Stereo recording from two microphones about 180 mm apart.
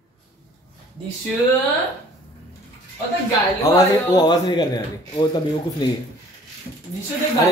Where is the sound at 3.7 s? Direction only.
20° left (ahead or behind).